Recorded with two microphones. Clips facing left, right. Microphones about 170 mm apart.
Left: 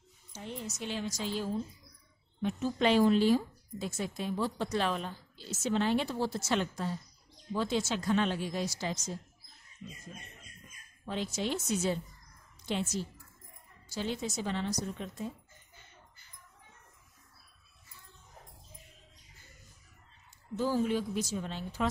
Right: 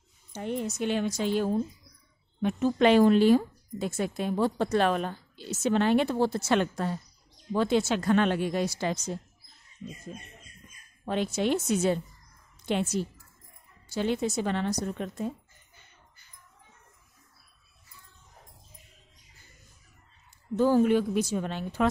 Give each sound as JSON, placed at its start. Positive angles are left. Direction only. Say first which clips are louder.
{"t": 0.3, "sound": "speech", "louder": "right 10 dB", "side_deg": -60}
{"t": 11.1, "sound": "speech", "louder": "right 7 dB", "side_deg": -60}
{"t": 20.5, "sound": "speech", "louder": "right 8 dB", "side_deg": -60}